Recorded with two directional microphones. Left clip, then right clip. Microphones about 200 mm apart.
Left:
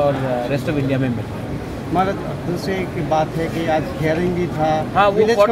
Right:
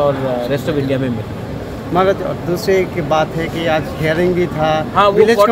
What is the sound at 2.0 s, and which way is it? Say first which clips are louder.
Speech: right 6 dB; 55° right (ahead or behind).